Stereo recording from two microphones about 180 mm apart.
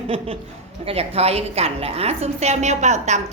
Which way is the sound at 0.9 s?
35° right (ahead or behind).